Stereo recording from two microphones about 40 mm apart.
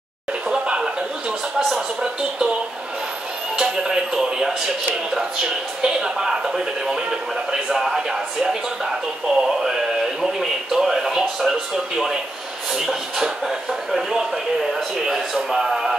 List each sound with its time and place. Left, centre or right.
0.5 s chuckle: right
2.0 s speech: centre
3.5 s speech: centre
9.3 s speech: centre
14.7 s speech: centre